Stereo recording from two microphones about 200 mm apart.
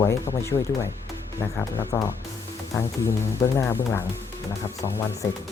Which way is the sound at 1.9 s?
10° left (ahead or behind).